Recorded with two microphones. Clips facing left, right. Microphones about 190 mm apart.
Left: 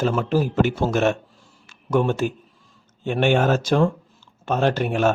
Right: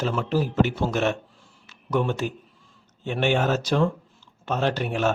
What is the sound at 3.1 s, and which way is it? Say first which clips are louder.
Speech: left 4 dB; 50° left (ahead or behind).